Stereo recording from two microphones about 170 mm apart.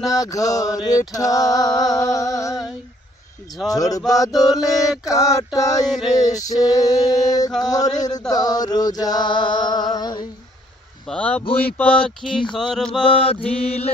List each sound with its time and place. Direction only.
0.0 s mantra: 20° left (ahead or behind)
11.1 s a man's voice: 10° left (ahead or behind)
11.8 s a sound: 5° left (ahead or behind)
13.1 s mantra: 35° left (ahead or behind)